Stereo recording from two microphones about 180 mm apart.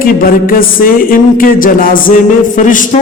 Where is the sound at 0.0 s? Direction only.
50° left (ahead or behind).